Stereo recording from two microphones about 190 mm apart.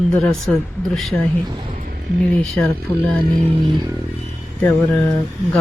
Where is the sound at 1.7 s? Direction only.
45° right (ahead or behind).